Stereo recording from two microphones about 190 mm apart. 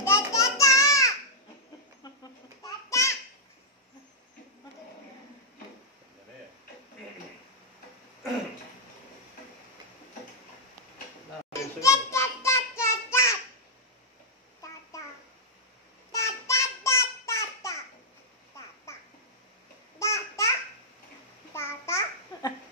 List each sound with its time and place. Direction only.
0.0 s a sound: 15° left (ahead or behind)
2.6 s babbling: 15° left (ahead or behind)
11.8 s a sound: 15° left (ahead or behind)
14.9 s child singing: 15° left (ahead or behind)
20.0 s babbling: 15° left (ahead or behind)
21.5 s babbling: 15° left (ahead or behind)